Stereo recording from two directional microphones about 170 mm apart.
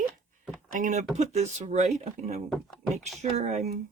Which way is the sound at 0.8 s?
50° right (ahead or behind).